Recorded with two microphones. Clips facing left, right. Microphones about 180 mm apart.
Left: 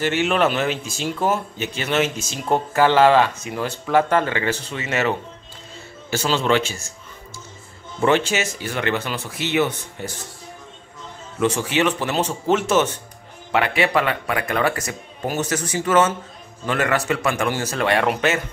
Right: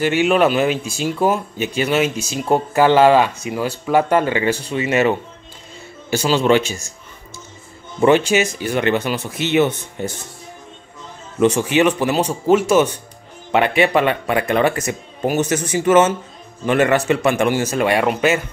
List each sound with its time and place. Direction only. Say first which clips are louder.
0.0 s speech: right 4 dB; 15° right (ahead or behind)
8.0 s speech: right 5 dB; 15° right (ahead or behind)
11.3 s speech: right 5 dB; 20° right (ahead or behind)